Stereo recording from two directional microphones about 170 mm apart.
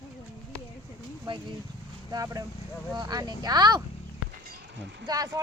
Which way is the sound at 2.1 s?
20° right (ahead or behind).